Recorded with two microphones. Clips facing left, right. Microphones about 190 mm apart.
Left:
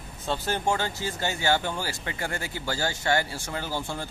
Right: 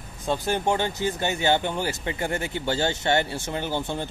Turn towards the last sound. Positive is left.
turn(degrees=-20)  # may be behind; listen again after turning